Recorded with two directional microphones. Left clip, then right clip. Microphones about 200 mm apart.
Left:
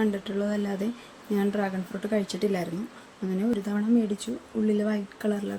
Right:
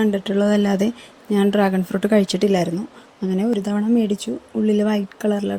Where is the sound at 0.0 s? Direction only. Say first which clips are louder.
Right 9 dB; 35° right (ahead or behind).